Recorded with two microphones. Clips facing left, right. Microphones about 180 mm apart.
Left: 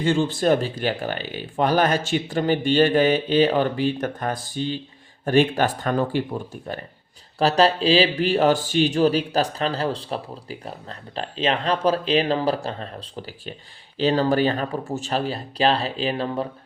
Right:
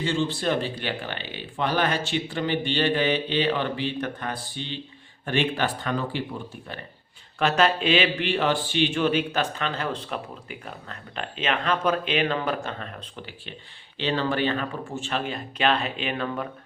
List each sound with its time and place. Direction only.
0.0 s speech: 50° left (ahead or behind)
7.3 s a man's voice: 35° left (ahead or behind)